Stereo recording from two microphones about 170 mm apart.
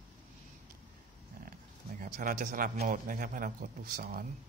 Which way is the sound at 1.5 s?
55° right (ahead or behind).